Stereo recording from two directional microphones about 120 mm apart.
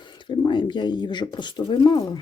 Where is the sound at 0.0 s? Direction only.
40° left (ahead or behind).